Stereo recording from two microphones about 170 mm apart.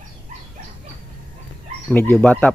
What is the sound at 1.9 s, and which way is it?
Speech, 10° left (ahead or behind).